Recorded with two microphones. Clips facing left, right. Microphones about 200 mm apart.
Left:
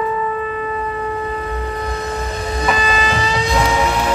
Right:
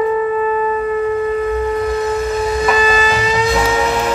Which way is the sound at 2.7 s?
35° left (ahead or behind).